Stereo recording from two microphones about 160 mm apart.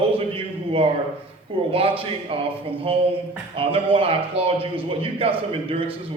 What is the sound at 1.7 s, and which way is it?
Speech, 35° right (ahead or behind).